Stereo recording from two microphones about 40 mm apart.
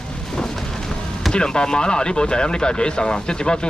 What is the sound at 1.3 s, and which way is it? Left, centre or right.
Speech, left.